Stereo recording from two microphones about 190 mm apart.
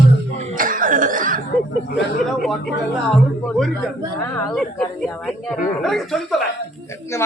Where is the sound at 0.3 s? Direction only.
40° right (ahead or behind).